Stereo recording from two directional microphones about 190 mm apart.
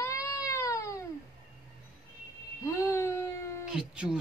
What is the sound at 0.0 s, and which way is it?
Baby cry, 15° left (ahead or behind).